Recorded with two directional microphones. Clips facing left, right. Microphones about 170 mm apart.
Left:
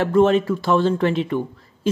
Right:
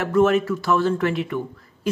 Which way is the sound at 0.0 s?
25° left (ahead or behind).